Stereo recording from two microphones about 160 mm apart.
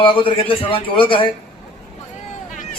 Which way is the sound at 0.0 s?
35° left (ahead or behind).